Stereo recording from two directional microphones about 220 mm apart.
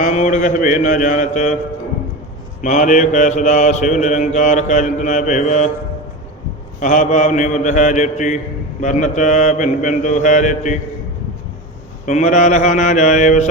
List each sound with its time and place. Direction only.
0.0 s mantra: 35° left (ahead or behind)
2.6 s mantra: 35° left (ahead or behind)
6.7 s mantra: 35° left (ahead or behind)
12.0 s mantra: 35° left (ahead or behind)